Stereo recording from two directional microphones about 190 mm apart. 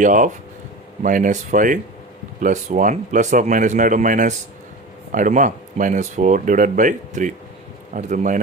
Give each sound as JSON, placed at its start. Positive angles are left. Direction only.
{"t": 0.0, "sound": "speech", "side_deg": -45}